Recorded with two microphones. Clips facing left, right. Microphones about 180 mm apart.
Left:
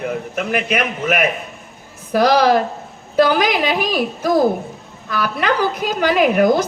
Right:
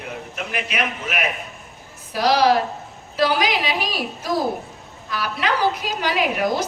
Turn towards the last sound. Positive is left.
turn(degrees=50)  # may be behind; listen again after turning